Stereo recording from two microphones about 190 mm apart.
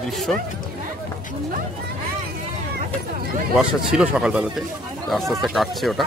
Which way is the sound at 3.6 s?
5° right (ahead or behind).